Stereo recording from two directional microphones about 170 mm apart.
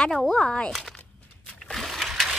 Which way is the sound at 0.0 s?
5° left (ahead or behind).